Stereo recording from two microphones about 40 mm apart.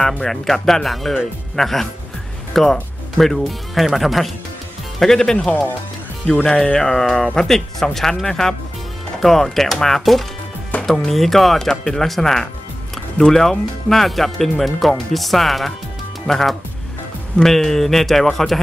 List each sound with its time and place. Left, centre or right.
0.2 s speech: centre